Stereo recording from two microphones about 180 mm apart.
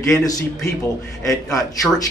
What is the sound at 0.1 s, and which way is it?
Speech, 20° left (ahead or behind).